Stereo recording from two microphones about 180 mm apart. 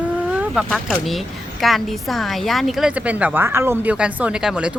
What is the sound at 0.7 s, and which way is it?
A woman's voice, 5° left (ahead or behind).